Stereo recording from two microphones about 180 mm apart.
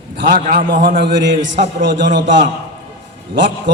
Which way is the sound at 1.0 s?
75° right (ahead or behind).